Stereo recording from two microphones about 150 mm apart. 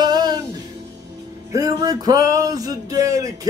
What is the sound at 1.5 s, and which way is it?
Music, 25° right (ahead or behind).